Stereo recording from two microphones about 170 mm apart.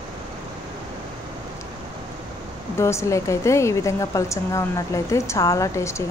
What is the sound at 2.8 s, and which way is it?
A woman's voice, 15° left (ahead or behind).